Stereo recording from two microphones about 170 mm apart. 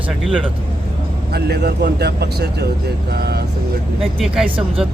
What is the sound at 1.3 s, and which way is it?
Speech, 70° right (ahead or behind).